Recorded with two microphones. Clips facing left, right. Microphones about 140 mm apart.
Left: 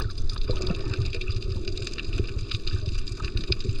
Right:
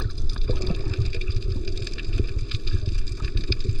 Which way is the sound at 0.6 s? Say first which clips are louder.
Right 1 dB; 15° left (ahead or behind).